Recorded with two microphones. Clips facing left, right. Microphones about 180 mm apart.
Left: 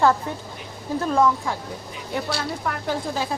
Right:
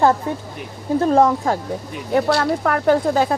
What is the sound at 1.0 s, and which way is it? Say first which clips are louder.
Speech: right 5 dB; 40° right (ahead or behind).